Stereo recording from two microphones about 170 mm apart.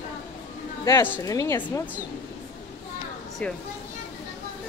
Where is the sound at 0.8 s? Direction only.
20° left (ahead or behind).